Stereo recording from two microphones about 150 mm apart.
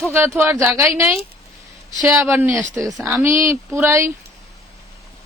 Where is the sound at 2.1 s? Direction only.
15° right (ahead or behind).